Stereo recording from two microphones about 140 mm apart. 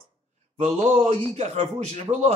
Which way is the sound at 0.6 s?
50° right (ahead or behind).